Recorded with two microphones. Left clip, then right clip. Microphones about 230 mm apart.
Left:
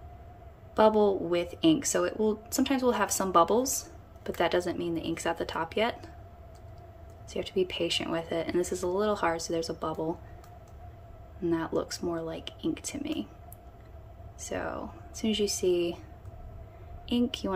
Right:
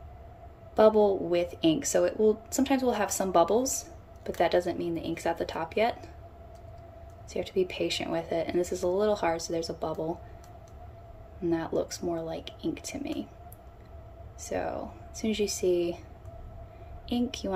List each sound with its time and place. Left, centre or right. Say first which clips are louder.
0.7 s speech: right 2 dB; centre
7.2 s speech: right 1 dB; centre
11.4 s speech: right 1 dB; centre
14.5 s speech: right 2 dB; centre
17.1 s speech: left 1 dB; centre